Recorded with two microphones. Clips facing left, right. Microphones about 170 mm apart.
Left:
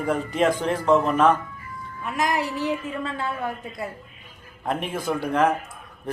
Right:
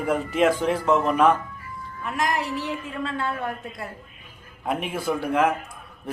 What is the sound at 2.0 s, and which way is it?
A woman's voice, centre (ahead or behind).